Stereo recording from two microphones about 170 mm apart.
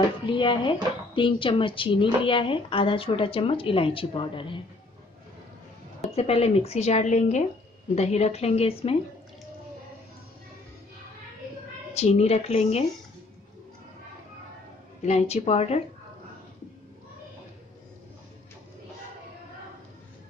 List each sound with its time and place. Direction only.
0.3 s speech: 30° left (ahead or behind)
6.1 s speech: 35° left (ahead or behind)
11.9 s speech: 40° left (ahead or behind)
15.0 s speech: 40° left (ahead or behind)